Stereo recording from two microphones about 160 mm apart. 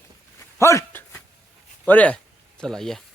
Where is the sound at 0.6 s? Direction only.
20° left (ahead or behind).